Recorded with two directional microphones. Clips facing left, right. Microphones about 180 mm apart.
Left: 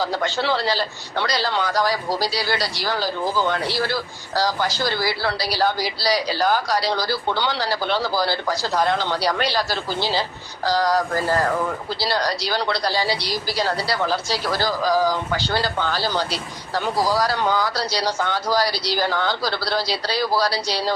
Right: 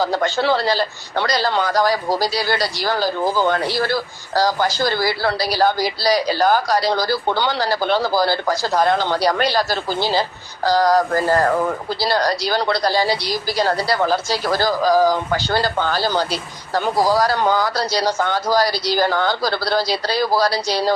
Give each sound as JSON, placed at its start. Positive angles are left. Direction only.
{"t": 0.0, "sound": "speech", "side_deg": -45}